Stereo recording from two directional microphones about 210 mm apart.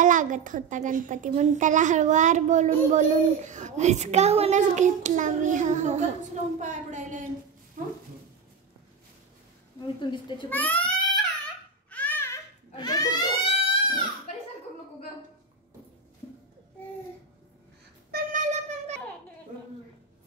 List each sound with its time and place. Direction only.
0.0 s a child's voice: 35° right (ahead or behind)
9.9 s a child's voice: 20° left (ahead or behind)
10.5 s speech: 5° left (ahead or behind)
11.9 s baby cry: 10° left (ahead or behind)
18.1 s wind instrument: 35° right (ahead or behind)